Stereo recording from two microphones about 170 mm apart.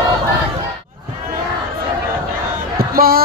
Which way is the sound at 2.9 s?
60° right (ahead or behind).